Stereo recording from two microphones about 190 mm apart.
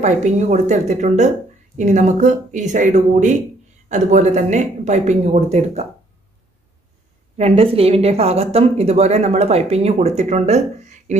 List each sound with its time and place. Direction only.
0.0 s speech: 40° right (ahead or behind)
7.3 s speech: 30° right (ahead or behind)